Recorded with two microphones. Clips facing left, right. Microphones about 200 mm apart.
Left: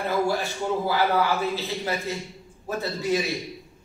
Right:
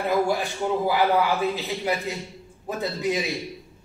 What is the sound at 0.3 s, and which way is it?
A man's voice, 15° right (ahead or behind).